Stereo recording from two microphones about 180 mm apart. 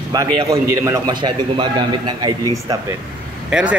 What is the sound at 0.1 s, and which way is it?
A man's voice, 20° right (ahead or behind).